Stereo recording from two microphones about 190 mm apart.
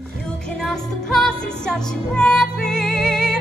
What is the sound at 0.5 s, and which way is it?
Music, 5° left (ahead or behind).